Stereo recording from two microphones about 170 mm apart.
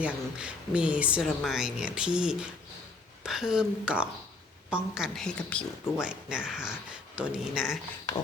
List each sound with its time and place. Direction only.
0.0 s speech: 5° right (ahead or behind)
6.0 s speech: 5° right (ahead or behind)